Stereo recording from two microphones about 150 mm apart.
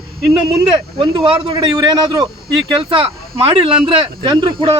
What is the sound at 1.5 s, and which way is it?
A man's voice, 20° right (ahead or behind).